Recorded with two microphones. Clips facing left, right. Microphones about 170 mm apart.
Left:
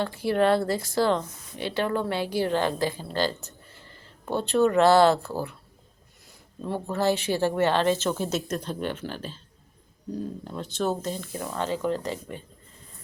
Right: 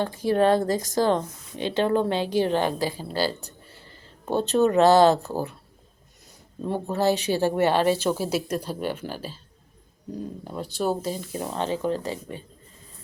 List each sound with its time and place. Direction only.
0.3 s speech: 15° right (ahead or behind)
0.7 s speech: 45° right (ahead or behind)
1.0 s a woman's voice: 20° right (ahead or behind)
6.6 s speech: 15° right (ahead or behind)
10.4 s speech: 10° right (ahead or behind)
11.3 s speech: 20° right (ahead or behind)